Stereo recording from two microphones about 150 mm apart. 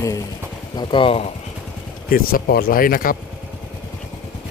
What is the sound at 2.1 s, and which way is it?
Speech, 80° left.